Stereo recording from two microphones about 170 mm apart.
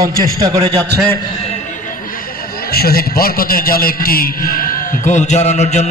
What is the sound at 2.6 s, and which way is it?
A man's voice, 65° left (ahead or behind).